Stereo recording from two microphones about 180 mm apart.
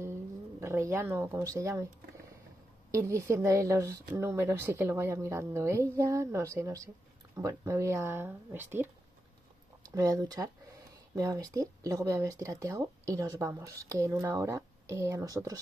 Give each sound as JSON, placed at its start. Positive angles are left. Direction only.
{"t": 0.6, "sound": "speech", "side_deg": -15}
{"t": 2.9, "sound": "speech", "side_deg": -15}